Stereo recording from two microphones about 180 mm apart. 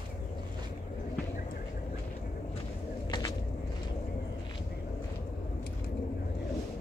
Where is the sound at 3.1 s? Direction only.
25° left (ahead or behind).